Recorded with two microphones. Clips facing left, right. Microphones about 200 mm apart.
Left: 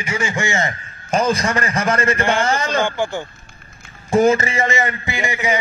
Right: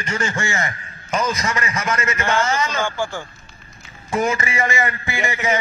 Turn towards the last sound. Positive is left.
turn(degrees=15)  # may be behind; listen again after turning